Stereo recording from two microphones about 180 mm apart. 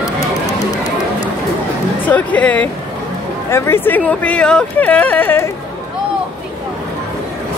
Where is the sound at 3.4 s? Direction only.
15° left (ahead or behind).